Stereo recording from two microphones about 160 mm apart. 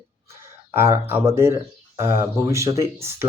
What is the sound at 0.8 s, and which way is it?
Speech, 15° right (ahead or behind).